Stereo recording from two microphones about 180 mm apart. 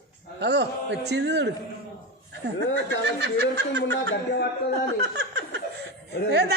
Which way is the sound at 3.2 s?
70° right (ahead or behind).